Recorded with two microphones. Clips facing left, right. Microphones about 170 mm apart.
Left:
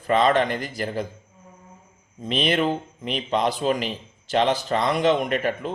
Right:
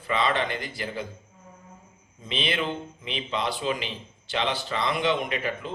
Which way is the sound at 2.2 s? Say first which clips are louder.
Left 7 dB; 45° left (ahead or behind).